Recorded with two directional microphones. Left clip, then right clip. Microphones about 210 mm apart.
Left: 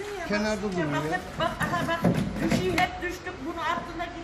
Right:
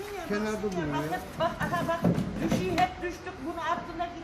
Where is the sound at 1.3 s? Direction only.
Centre (ahead or behind).